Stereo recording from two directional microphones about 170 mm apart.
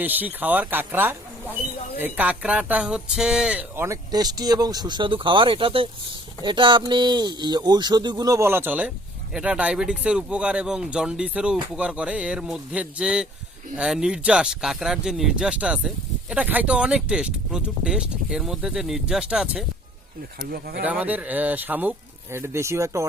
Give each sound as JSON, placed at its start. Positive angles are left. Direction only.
{"t": 0.0, "sound": "speech", "side_deg": -10}
{"t": 20.5, "sound": "speech", "side_deg": -65}
{"t": 20.8, "sound": "speech", "side_deg": -10}